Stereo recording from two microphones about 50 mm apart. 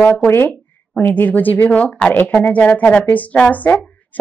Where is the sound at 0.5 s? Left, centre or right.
Left.